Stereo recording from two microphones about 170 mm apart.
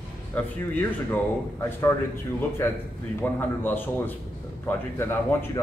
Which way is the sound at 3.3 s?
10° left (ahead or behind).